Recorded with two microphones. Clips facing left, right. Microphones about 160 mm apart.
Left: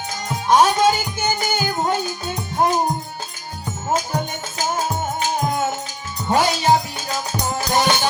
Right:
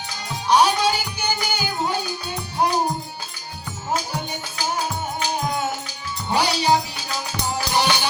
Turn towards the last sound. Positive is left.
turn(degrees=45)  # may be behind; listen again after turning